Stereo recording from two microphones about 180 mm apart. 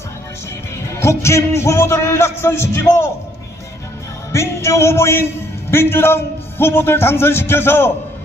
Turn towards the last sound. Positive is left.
turn(degrees=15)  # may be behind; listen again after turning